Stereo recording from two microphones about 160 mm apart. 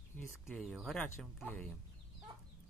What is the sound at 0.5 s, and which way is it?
Speech, centre (ahead or behind).